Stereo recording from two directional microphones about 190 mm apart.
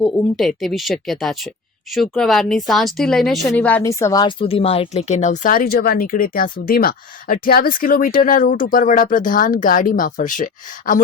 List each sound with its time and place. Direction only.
0.0 s speech: centre (ahead or behind); by 11.0 s 45° left (ahead or behind)